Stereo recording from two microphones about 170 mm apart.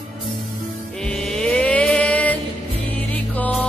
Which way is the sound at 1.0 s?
5° left (ahead or behind).